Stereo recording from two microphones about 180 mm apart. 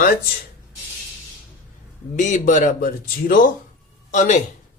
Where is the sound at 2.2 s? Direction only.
45° left (ahead or behind).